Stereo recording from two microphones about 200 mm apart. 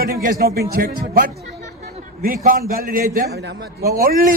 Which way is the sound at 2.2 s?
45° right (ahead or behind).